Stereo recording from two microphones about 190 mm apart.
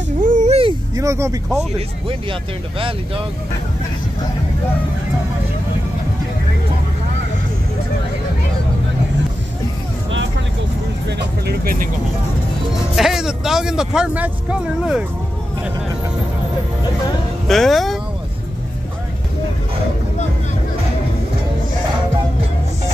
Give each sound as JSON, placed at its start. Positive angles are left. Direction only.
{"t": 0.2, "sound": "a sound", "side_deg": -40}
{"t": 0.9, "sound": "speech", "side_deg": -15}
{"t": 11.1, "sound": "speech", "side_deg": -60}
{"t": 12.9, "sound": "speech", "side_deg": 0}
{"t": 17.5, "sound": "speech", "side_deg": 0}